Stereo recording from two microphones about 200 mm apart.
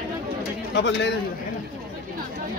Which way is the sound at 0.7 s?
60° left (ahead or behind).